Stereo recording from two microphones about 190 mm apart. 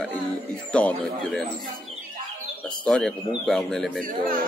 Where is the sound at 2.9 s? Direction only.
5° left (ahead or behind).